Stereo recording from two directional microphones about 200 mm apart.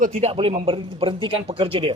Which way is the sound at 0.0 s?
35° right (ahead or behind).